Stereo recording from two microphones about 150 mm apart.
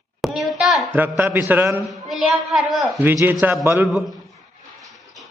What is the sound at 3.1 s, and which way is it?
Speech, 15° right (ahead or behind).